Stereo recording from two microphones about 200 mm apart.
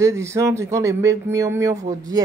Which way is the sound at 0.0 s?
15° right (ahead or behind).